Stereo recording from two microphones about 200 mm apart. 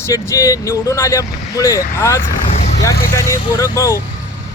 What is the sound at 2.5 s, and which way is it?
Vehicle, 35° left (ahead or behind).